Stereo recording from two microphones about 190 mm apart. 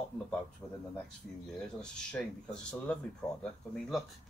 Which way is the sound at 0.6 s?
10° left (ahead or behind).